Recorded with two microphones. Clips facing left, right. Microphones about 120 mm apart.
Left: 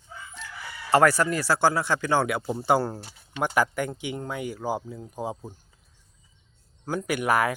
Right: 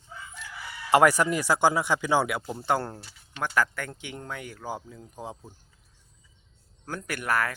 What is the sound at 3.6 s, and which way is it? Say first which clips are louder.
Speech: left 2 dB; 15° left (ahead or behind).